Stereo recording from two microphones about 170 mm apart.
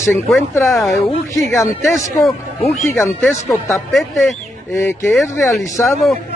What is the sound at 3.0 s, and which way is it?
Speech, 15° left (ahead or behind).